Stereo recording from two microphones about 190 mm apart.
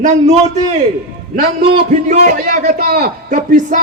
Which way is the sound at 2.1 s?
45° right (ahead or behind).